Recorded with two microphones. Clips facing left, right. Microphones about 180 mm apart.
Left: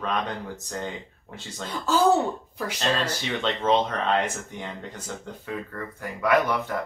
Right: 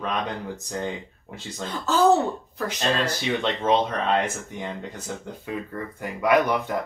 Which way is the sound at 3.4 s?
10° right (ahead or behind).